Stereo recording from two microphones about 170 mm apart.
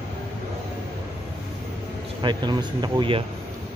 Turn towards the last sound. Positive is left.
turn(degrees=-30)  # may be behind; listen again after turning